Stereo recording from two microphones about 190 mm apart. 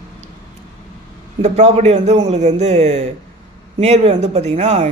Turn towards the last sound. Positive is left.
turn(degrees=-35)  # may be behind; listen again after turning